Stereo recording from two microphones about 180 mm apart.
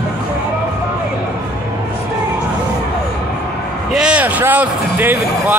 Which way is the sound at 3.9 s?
5° right (ahead or behind).